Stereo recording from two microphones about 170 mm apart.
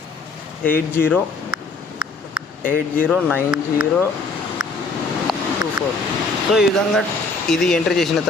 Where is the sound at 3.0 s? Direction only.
5° left (ahead or behind).